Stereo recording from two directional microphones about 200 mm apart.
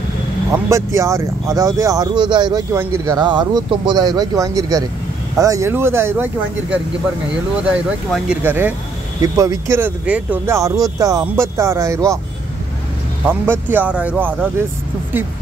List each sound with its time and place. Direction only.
0.5 s speech: 15° right (ahead or behind)
8.1 s speech: 5° right (ahead or behind)
13.3 s speech: 10° right (ahead or behind)